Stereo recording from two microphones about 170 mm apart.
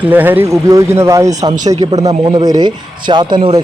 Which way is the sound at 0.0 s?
10° right (ahead or behind).